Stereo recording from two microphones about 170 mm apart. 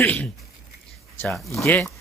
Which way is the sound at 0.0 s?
10° left (ahead or behind).